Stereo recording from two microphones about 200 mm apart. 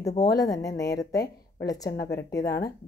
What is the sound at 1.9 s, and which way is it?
Speech, 55° left (ahead or behind).